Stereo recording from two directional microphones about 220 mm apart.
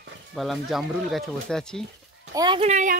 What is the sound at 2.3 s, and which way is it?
Speech, 20° right (ahead or behind).